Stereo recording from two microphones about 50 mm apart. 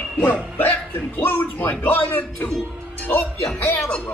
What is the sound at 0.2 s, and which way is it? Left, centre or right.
Speech, left.